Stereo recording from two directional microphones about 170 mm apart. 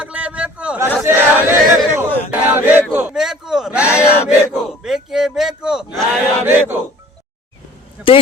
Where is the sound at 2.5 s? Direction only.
10° right (ahead or behind).